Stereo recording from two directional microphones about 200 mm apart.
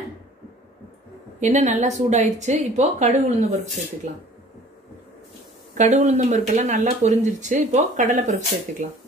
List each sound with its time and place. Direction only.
1.4 s speech: 35° right (ahead or behind)
5.8 s speech: 35° right (ahead or behind)